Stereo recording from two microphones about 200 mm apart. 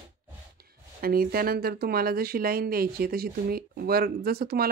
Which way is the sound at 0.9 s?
50° right (ahead or behind).